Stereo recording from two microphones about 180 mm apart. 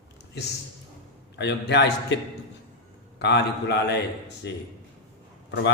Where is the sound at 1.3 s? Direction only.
70° left (ahead or behind).